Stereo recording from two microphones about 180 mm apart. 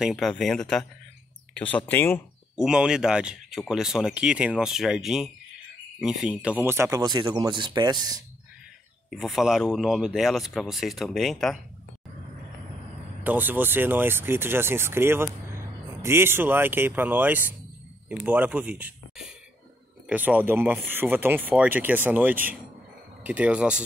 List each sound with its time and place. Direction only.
0.0 s speech: centre (ahead or behind)
2.5 s speech: 5° right (ahead or behind); by 8.2 s 20° right (ahead or behind)
9.1 s speech: centre (ahead or behind)
13.2 s speech: 10° right (ahead or behind)